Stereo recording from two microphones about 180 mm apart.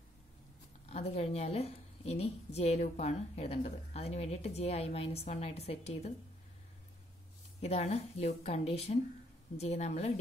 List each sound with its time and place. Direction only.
0.8 s a woman's voice: 35° left (ahead or behind)
7.6 s a woman's voice: 35° left (ahead or behind)